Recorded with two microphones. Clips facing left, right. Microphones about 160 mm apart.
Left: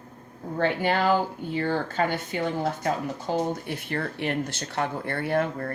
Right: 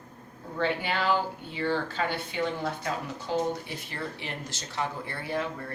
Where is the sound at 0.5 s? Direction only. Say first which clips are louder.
Left 5 dB; 50° left (ahead or behind).